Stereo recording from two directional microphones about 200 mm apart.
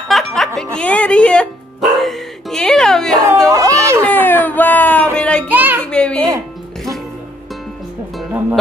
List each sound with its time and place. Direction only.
0.1 s music: centre (ahead or behind)
3.4 s a sound: 15° right (ahead or behind)
4.0 s baby cry: 10° left (ahead or behind)
5.1 s child singing: 5° left (ahead or behind)
5.5 s child singing: 10° right (ahead or behind)
5.9 s a sound: 5° left (ahead or behind)
8.2 s music: 5° right (ahead or behind)